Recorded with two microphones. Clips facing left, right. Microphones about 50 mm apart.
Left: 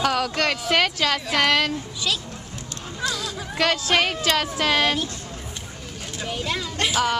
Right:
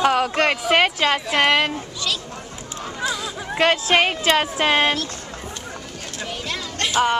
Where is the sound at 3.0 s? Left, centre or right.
Centre.